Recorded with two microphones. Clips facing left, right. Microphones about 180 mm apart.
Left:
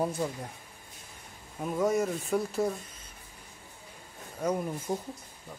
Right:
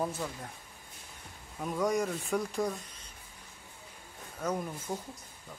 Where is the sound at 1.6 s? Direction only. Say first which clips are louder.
Left 3 dB; 5° left (ahead or behind).